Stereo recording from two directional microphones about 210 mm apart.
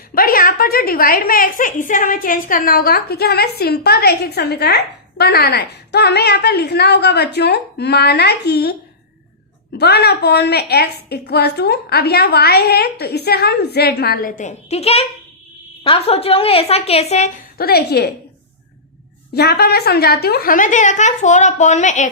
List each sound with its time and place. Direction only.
0.1 s a woman's voice: 45° left (ahead or behind)
9.7 s a woman's voice: 50° left (ahead or behind); by 17.3 s 30° left (ahead or behind)
17.6 s a woman's voice: 50° left (ahead or behind)
19.3 s a woman's voice: 50° left (ahead or behind)